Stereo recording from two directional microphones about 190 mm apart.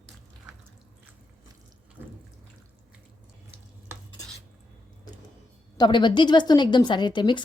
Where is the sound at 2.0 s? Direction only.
10° right (ahead or behind).